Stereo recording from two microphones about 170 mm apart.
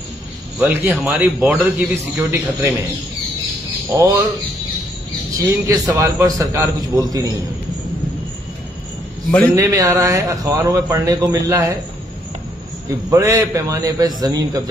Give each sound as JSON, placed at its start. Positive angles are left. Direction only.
{"t": 0.6, "sound": "a man's voice", "side_deg": -10}
{"t": 3.9, "sound": "a man's voice", "side_deg": -15}
{"t": 5.4, "sound": "a man's voice", "side_deg": -20}
{"t": 9.5, "sound": "a man's voice", "side_deg": -20}
{"t": 13.1, "sound": "a man's voice", "side_deg": -15}